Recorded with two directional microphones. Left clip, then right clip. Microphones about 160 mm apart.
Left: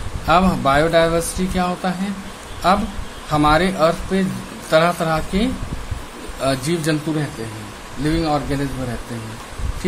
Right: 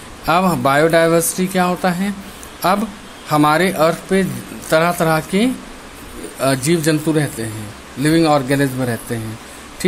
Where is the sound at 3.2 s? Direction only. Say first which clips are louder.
Right 2 dB; 35° right (ahead or behind).